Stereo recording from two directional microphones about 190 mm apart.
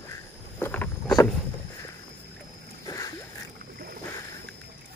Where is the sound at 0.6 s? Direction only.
10° left (ahead or behind).